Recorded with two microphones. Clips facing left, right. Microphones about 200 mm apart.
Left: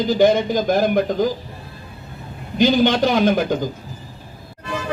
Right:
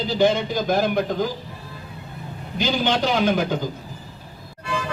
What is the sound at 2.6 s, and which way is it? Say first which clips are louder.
Speech: left 7 dB; 50° left (ahead or behind).